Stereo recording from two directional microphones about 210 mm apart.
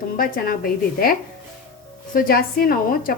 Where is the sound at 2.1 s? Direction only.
45° left (ahead or behind).